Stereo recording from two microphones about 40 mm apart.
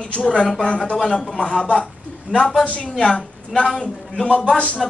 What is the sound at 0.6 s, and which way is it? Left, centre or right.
Speech, left.